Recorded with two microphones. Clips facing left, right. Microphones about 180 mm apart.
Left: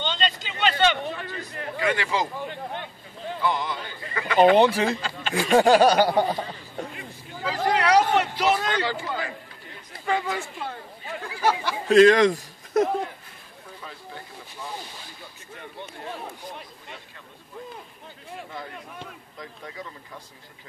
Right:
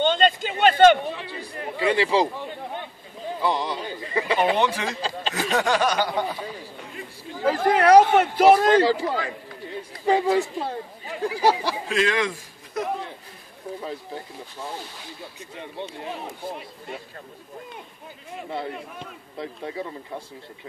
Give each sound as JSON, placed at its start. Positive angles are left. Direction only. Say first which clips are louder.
{"t": 0.0, "sound": "a sound", "louder": "right 8 dB", "side_deg": -50}
{"t": 1.4, "sound": "speech", "louder": "right 3 dB", "side_deg": -30}
{"t": 3.4, "sound": "speech", "louder": "right 2 dB", "side_deg": -35}
{"t": 4.4, "sound": "speech", "louder": "left 8 dB", "side_deg": 30}
{"t": 7.4, "sound": "a man's voice", "louder": "right 5 dB", "side_deg": -50}
{"t": 11.9, "sound": "a man's voice", "louder": "left 10 dB", "side_deg": 40}
{"t": 13.7, "sound": "speech", "louder": "right 7 dB", "side_deg": -30}
{"t": 19.3, "sound": "speech", "louder": "right 9 dB", "side_deg": -30}